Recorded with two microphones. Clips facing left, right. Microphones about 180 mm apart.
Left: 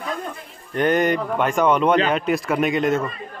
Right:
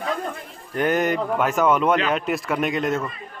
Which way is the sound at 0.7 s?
5° right (ahead or behind).